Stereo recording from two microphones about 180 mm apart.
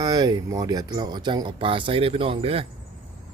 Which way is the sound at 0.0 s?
20° right (ahead or behind).